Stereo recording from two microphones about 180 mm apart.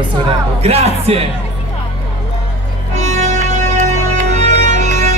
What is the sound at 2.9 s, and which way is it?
Music, 40° right (ahead or behind).